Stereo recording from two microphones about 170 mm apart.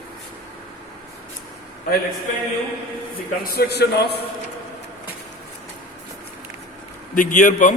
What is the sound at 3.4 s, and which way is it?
Speech, 70° left (ahead or behind).